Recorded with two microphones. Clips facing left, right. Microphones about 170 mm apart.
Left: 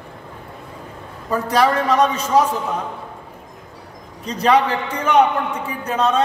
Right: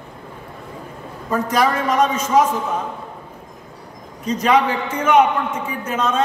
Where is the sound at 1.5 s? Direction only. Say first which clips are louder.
Left 3 dB; 35° left (ahead or behind).